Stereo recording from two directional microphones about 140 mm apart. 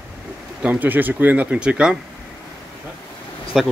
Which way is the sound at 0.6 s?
10° right (ahead or behind).